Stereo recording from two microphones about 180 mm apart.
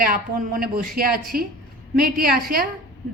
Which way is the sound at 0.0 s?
55° right (ahead or behind).